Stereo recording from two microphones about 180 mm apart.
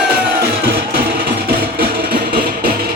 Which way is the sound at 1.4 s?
60° right (ahead or behind).